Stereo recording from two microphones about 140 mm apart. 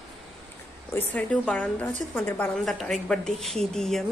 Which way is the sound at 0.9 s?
10° left (ahead or behind).